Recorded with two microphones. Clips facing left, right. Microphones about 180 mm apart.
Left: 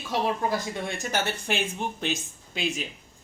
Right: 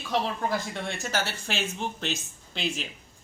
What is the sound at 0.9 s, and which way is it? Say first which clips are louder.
Speech: left 2 dB; 20° left (ahead or behind).